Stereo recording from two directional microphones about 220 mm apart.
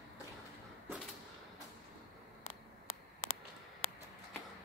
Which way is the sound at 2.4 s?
70° left (ahead or behind).